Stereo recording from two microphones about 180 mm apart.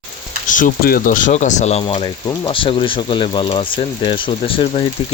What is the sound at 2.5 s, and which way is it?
Speech, 30° left (ahead or behind).